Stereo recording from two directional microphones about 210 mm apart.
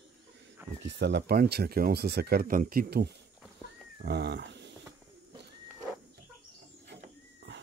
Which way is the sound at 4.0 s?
50° right (ahead or behind).